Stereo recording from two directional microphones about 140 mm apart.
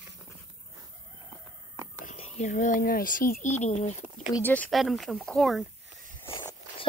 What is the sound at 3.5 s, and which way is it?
Speech, 55° left (ahead or behind).